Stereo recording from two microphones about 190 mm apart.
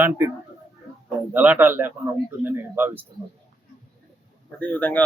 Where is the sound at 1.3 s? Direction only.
10° right (ahead or behind).